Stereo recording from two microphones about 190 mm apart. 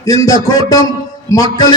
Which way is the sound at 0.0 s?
20° left (ahead or behind).